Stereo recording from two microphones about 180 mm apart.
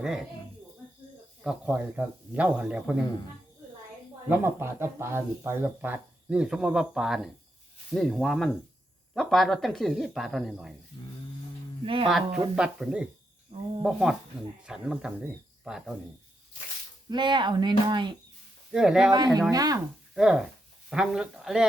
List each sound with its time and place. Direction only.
0.0 s speech: 5° right (ahead or behind)
1.5 s speech: 10° right (ahead or behind)
4.3 s speech: 15° right (ahead or behind)
12.0 s speech: centre (ahead or behind)
13.5 s speech: 30° right (ahead or behind)
13.8 s speech: 5° right (ahead or behind)
17.1 s speech: 25° right (ahead or behind)
18.7 s speech: 5° right (ahead or behind)
19.1 s speech: 20° right (ahead or behind)
20.1 s speech: 5° right (ahead or behind)